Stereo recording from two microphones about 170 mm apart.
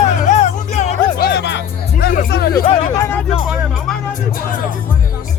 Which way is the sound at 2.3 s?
65° left (ahead or behind).